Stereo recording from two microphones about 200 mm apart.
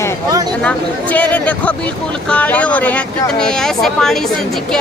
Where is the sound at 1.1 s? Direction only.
5° left (ahead or behind).